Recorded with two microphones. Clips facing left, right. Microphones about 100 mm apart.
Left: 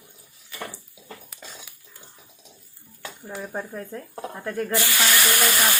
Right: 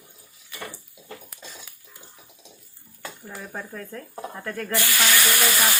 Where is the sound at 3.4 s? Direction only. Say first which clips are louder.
Left 4 dB; 15° left (ahead or behind).